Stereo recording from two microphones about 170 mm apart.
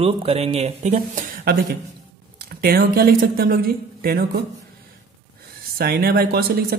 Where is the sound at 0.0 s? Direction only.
35° right (ahead or behind); by 4.4 s 65° right (ahead or behind).